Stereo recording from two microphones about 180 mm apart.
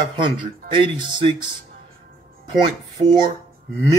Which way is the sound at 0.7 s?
25° right (ahead or behind).